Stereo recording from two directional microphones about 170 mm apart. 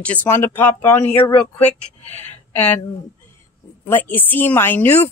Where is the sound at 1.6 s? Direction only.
40° left (ahead or behind).